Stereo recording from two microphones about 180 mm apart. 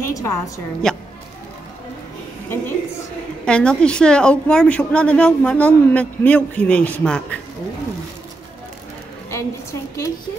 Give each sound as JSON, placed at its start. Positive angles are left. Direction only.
{"t": 0.0, "sound": "a sound", "side_deg": 15}
{"t": 0.8, "sound": "speech", "side_deg": 5}
{"t": 2.5, "sound": "a woman's voice", "side_deg": 15}
{"t": 9.3, "sound": "a woman's voice", "side_deg": 15}